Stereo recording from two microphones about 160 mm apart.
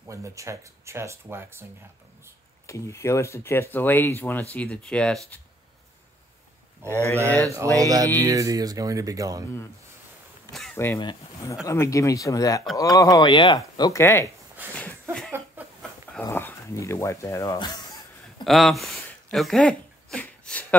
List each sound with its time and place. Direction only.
0.0 s speech: 20° right (ahead or behind)
2.6 s speech: 20° left (ahead or behind)
6.8 s speech: 15° right (ahead or behind)
10.7 s speech: 15° left (ahead or behind)
11.0 s speech: 25° left (ahead or behind)
14.8 s a sound: 5° left (ahead or behind)
15.6 s a sound: 10° right (ahead or behind)
16.2 s speech: 15° left (ahead or behind)
18.4 s speech: centre (ahead or behind)
19.3 s a sound: centre (ahead or behind)